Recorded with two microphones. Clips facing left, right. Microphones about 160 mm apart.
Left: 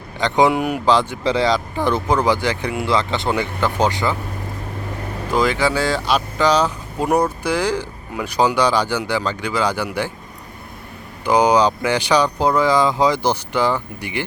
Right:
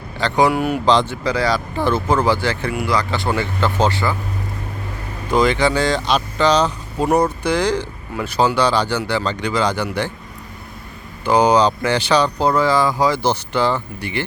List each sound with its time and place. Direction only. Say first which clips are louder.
0.2 s speech: even; 20° left (ahead or behind)
1.2 s speech: left 1 dB; 25° left (ahead or behind)
5.3 s speech: right 2 dB; 5° left (ahead or behind)
11.3 s speech: right 1 dB; 10° left (ahead or behind)